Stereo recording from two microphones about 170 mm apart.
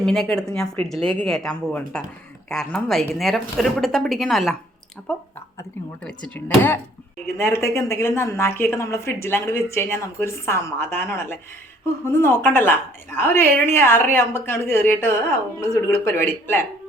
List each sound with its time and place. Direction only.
0.0 s speech: centre (ahead or behind)
6.0 s a woman's voice: 5° left (ahead or behind)